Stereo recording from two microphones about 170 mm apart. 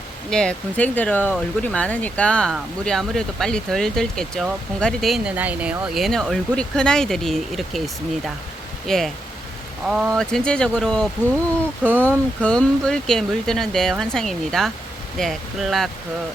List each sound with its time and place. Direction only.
0.3 s speech: 5° left (ahead or behind)
8.9 s speech: centre (ahead or behind)
11.8 s speech: 10° right (ahead or behind)
12.4 s speech: 5° left (ahead or behind)